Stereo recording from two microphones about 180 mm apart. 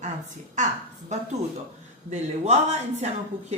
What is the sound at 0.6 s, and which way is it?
A woman's voice, 45° right (ahead or behind).